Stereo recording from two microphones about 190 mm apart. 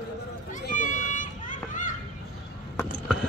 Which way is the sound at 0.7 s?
45° left (ahead or behind).